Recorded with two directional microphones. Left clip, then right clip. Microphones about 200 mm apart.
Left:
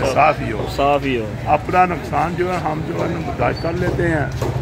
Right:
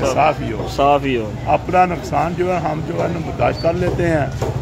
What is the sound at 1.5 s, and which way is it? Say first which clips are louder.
Speech: even; 45° right (ahead or behind).